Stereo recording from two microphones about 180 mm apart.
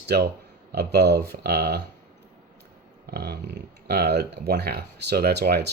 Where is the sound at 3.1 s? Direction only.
65° right (ahead or behind).